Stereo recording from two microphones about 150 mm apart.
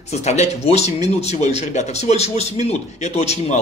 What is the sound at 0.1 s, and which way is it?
A man's voice, 50° left (ahead or behind).